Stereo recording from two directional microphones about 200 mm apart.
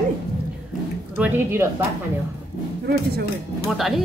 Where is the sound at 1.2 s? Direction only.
10° right (ahead or behind).